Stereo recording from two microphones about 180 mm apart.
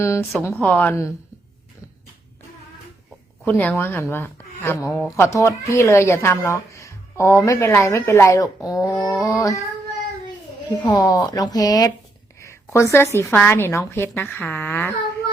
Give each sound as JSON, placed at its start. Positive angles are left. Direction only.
{"t": 0.0, "sound": "speech", "side_deg": 15}
{"t": 3.4, "sound": "speech", "side_deg": 10}
{"t": 10.8, "sound": "a woman's voice", "side_deg": 20}